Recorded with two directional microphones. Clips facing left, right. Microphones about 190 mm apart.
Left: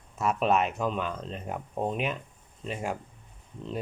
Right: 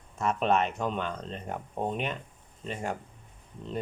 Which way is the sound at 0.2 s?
5° left (ahead or behind).